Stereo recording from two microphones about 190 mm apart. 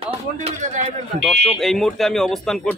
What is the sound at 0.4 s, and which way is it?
Speech, 35° right (ahead or behind).